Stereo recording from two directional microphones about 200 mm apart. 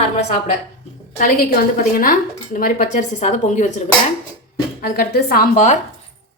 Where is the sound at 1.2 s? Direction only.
45° left (ahead or behind).